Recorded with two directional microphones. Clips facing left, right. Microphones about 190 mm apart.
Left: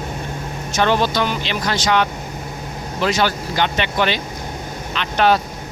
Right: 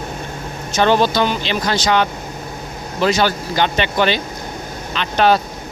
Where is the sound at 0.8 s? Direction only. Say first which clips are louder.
Right 3 dB; 30° right (ahead or behind).